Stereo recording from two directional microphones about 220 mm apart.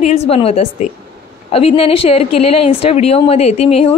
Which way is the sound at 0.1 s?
25° left (ahead or behind).